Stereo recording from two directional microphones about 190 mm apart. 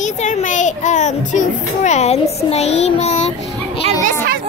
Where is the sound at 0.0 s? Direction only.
40° left (ahead or behind).